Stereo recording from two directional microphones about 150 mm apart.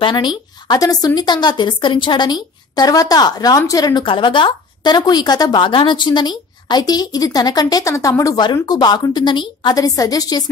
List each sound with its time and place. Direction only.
0.0 s a woman's voice: 30° left (ahead or behind)